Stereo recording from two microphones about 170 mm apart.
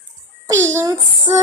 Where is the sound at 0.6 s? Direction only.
15° right (ahead or behind).